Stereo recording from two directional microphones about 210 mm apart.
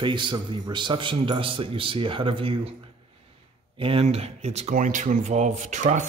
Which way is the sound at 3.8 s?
25° right (ahead or behind).